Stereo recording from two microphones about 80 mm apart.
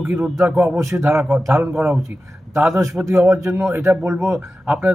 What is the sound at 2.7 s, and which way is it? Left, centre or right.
Speech, right.